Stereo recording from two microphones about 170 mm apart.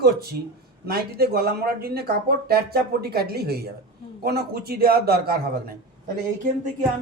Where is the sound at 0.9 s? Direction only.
65° right (ahead or behind).